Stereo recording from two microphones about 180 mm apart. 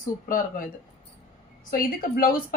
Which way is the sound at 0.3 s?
50° left (ahead or behind).